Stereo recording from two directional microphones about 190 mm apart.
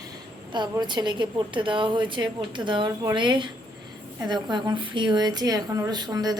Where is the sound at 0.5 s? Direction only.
25° right (ahead or behind).